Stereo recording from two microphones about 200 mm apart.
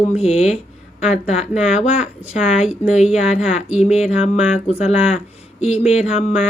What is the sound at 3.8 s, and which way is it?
Speech, 35° left (ahead or behind).